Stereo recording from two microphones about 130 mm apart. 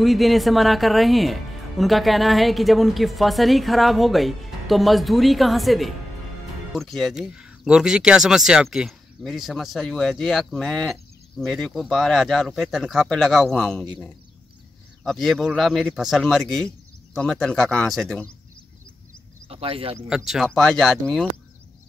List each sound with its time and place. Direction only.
0.0 s speech: centre (ahead or behind)
15.0 s speech: centre (ahead or behind)
19.5 s speech: 45° right (ahead or behind)
20.2 s speech: centre (ahead or behind)